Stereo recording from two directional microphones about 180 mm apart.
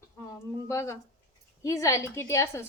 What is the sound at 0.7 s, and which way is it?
A woman's voice, 15° left (ahead or behind).